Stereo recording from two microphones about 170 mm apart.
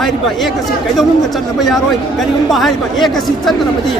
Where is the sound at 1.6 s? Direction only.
Centre (ahead or behind).